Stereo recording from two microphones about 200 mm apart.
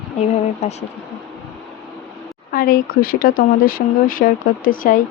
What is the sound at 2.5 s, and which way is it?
Speech, 45° left (ahead or behind).